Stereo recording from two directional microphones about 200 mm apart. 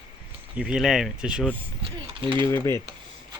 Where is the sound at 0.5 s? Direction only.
5° right (ahead or behind).